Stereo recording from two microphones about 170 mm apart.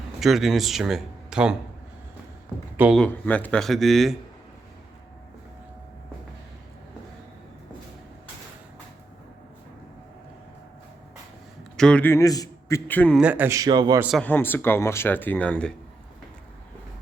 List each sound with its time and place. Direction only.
0.2 s speech: centre (ahead or behind)
2.7 s speech: 10° right (ahead or behind)
3.0 s speech: 10° left (ahead or behind)
11.8 s speech: 5° left (ahead or behind)
13.1 s speech: 10° right (ahead or behind); by 14.0 s 25° right (ahead or behind)
14.2 s speech: 10° left (ahead or behind)